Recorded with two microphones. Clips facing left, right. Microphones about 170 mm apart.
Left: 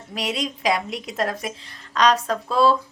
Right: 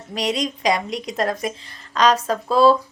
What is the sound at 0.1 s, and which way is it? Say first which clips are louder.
A woman's voice: right 4 dB; 5° left (ahead or behind).